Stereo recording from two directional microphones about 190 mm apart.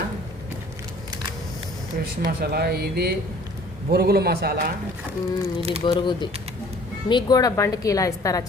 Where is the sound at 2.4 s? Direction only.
55° right (ahead or behind).